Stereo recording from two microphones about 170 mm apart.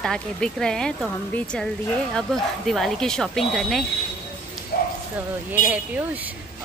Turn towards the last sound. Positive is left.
turn(degrees=-10)  # may be behind; listen again after turning